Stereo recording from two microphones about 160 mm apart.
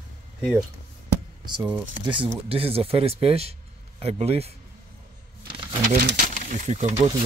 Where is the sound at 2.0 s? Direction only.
30° right (ahead or behind).